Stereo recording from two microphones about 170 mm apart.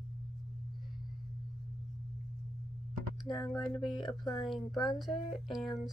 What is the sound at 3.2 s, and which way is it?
Speech, 25° left (ahead or behind).